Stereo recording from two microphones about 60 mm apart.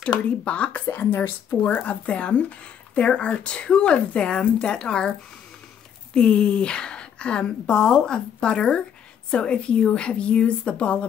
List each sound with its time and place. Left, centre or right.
0.0 s a woman's voice: centre
0.9 s speech: left
1.8 s a woman's voice: left
6.1 s a woman's voice: centre